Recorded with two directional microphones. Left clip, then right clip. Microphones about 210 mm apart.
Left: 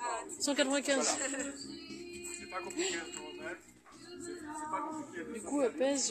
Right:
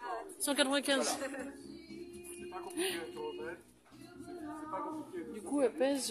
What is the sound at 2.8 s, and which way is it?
Speech, 5° right (ahead or behind).